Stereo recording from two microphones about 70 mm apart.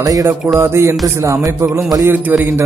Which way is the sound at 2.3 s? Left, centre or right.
Right.